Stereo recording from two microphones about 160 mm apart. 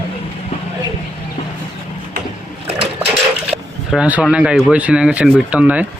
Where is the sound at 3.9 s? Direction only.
5° right (ahead or behind).